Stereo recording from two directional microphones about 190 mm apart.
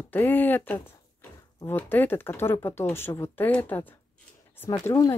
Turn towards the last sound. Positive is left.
turn(degrees=15)  # may be behind; listen again after turning